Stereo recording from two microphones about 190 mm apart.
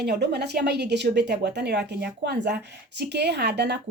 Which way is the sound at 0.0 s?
60° right (ahead or behind).